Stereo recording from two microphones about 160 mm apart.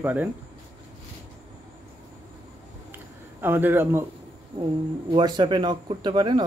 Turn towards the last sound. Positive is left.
turn(degrees=-30)  # may be behind; listen again after turning